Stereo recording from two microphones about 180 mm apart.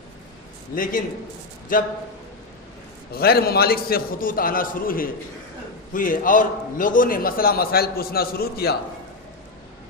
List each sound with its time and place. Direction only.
0.8 s a man's voice: 50° left (ahead or behind)
3.1 s a man's voice: 60° left (ahead or behind)